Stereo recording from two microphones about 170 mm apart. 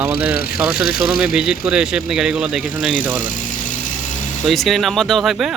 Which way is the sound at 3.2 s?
50° left (ahead or behind).